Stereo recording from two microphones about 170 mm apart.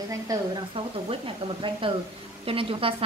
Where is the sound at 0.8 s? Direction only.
30° right (ahead or behind).